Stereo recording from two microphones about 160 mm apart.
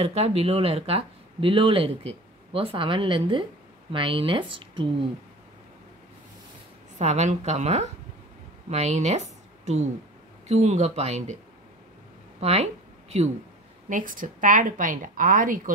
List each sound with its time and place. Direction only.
0.0 s speech: 40° right (ahead or behind)
7.0 s a woman's voice: 45° right (ahead or behind)
12.4 s a woman's voice: 40° right (ahead or behind)
13.8 s a woman's voice: 55° right (ahead or behind)